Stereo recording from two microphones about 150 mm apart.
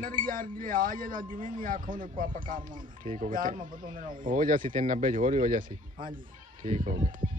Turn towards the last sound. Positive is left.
turn(degrees=-65)  # may be behind; listen again after turning